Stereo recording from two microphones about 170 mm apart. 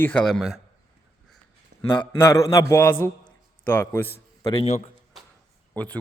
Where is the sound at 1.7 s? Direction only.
90° right.